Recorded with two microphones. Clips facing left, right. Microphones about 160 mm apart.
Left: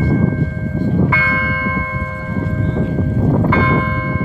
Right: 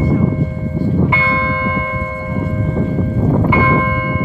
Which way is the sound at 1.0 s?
20° right (ahead or behind).